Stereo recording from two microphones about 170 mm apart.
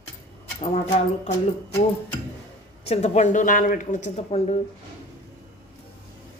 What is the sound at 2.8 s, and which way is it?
Speech, 40° left (ahead or behind).